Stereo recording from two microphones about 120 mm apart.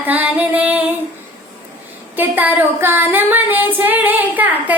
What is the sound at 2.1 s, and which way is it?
Female singing, 15° right (ahead or behind).